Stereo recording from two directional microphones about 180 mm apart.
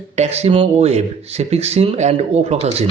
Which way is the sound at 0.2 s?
35° right (ahead or behind).